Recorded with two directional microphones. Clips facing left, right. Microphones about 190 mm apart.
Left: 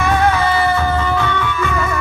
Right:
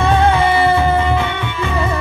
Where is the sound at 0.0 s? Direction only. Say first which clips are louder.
Right 2 dB; 25° right (ahead or behind).